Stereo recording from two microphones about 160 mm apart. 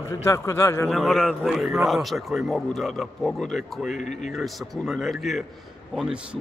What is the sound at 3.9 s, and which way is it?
Speech, 50° left (ahead or behind).